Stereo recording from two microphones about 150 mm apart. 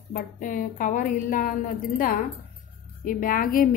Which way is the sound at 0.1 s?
65° left (ahead or behind).